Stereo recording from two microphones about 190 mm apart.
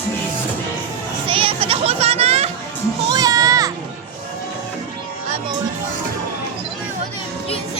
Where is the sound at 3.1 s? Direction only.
20° right (ahead or behind).